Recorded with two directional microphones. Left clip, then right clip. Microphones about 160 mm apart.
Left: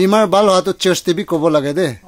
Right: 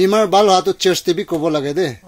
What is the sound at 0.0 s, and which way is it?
Speech, 25° left (ahead or behind).